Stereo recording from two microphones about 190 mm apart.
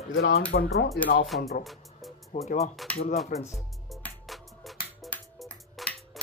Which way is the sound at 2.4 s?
40° left (ahead or behind).